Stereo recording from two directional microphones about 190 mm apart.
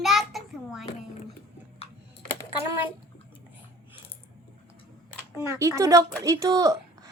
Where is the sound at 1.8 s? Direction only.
30° left (ahead or behind).